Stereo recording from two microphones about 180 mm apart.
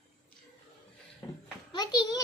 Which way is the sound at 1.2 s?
25° left (ahead or behind).